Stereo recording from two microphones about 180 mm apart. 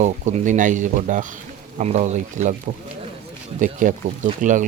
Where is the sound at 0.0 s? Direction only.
40° right (ahead or behind).